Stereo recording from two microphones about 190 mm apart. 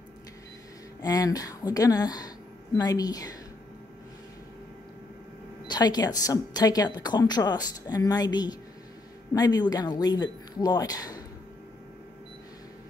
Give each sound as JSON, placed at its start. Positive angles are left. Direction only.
{"t": 1.0, "sound": "a woman's voice", "side_deg": 20}
{"t": 5.7, "sound": "a woman's voice", "side_deg": 20}